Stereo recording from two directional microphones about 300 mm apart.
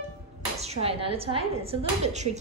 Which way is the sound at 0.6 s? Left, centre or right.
Centre.